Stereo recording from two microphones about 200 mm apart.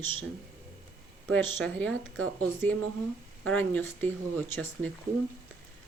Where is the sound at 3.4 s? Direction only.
5° left (ahead or behind).